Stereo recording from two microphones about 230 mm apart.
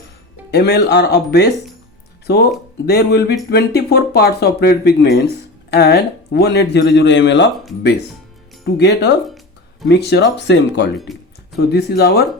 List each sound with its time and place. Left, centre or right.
0.5 s speech: left
2.8 s speech: left
8.6 s speech: left